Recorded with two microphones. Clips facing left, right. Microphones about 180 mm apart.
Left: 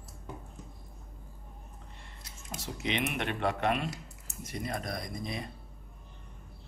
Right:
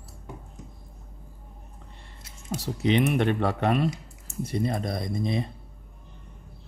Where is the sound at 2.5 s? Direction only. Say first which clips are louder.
Right 10 dB; 35° right (ahead or behind).